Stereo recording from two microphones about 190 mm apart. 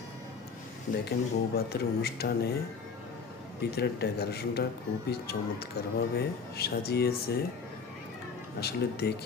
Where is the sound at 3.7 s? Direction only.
60° left (ahead or behind).